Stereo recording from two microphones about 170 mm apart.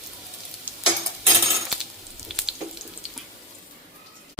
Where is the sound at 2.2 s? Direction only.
Centre (ahead or behind).